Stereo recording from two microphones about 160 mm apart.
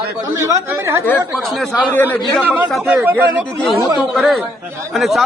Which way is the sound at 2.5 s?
10° right (ahead or behind).